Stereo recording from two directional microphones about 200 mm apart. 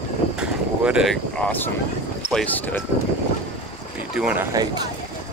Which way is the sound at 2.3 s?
10° left (ahead or behind).